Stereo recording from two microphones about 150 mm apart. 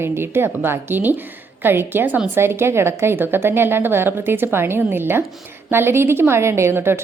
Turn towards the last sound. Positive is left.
turn(degrees=-15)  # may be behind; listen again after turning